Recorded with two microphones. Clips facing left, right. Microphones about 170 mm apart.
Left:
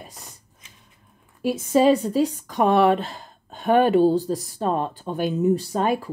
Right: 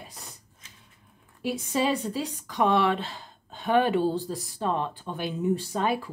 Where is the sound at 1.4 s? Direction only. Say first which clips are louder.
Left 8 dB; 45° left (ahead or behind).